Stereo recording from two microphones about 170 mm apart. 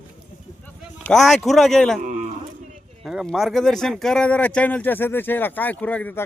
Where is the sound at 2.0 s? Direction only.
45° right (ahead or behind).